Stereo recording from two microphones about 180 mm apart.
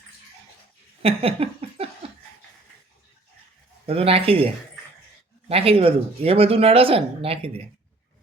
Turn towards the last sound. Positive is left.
turn(degrees=-30)  # may be behind; listen again after turning